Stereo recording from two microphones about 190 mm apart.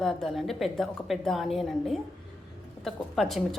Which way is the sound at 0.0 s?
Centre (ahead or behind).